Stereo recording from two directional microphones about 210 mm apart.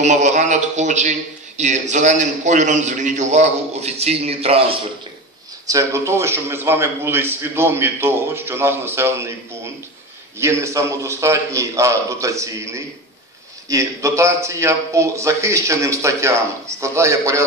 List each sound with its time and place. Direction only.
0.0 s a man's voice: 35° right (ahead or behind)
5.7 s a man's voice: 15° right (ahead or behind)
10.4 s a man's voice: 15° right (ahead or behind)